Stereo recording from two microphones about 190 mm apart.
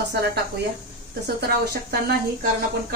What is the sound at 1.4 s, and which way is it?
Speech, 55° right (ahead or behind).